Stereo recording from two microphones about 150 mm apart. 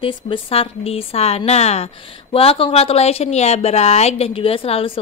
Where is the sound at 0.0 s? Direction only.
40° left (ahead or behind).